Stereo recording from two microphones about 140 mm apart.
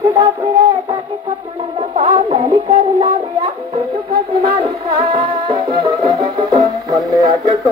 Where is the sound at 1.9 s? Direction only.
40° right (ahead or behind).